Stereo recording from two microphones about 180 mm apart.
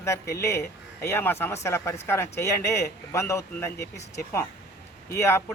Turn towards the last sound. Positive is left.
turn(degrees=15)  # may be behind; listen again after turning